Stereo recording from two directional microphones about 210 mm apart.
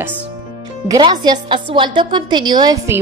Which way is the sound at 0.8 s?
20° right (ahead or behind).